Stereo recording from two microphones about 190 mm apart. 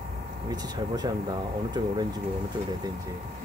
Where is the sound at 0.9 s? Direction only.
20° right (ahead or behind).